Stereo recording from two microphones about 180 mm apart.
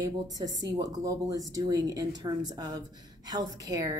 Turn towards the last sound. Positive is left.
turn(degrees=-20)  # may be behind; listen again after turning